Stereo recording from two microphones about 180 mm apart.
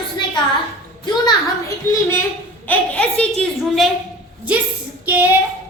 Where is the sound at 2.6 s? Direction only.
10° left (ahead or behind).